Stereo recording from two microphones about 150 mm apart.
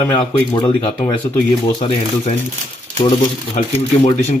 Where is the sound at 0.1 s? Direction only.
30° left (ahead or behind).